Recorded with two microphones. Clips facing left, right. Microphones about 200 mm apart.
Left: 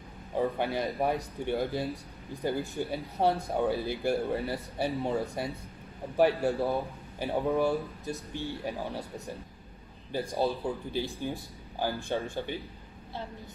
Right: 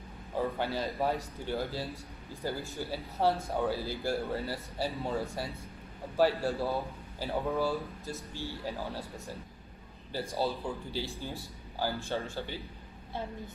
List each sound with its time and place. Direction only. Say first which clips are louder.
0.4 s speech: left 3 dB; 15° left (ahead or behind)